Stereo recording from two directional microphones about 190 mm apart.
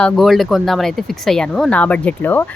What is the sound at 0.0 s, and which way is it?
Speech, centre (ahead or behind).